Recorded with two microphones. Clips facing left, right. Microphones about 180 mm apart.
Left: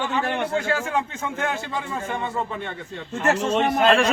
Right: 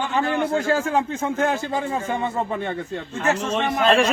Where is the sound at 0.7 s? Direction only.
40° right (ahead or behind).